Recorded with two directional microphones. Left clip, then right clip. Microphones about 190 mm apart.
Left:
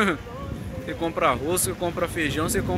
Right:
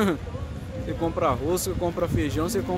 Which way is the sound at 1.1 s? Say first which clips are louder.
Left 2 dB; 5° right (ahead or behind).